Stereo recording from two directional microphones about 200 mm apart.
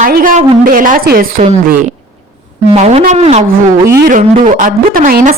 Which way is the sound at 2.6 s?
35° right (ahead or behind).